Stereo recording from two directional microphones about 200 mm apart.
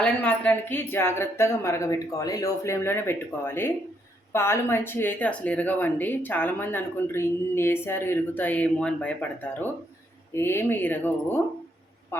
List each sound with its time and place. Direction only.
0.0 s speech: 5° left (ahead or behind)